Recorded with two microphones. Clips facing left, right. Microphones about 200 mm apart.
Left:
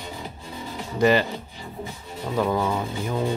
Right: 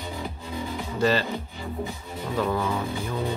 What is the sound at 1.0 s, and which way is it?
Speech, 15° left (ahead or behind).